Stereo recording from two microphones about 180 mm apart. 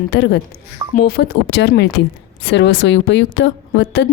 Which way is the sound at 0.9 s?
60° left (ahead or behind).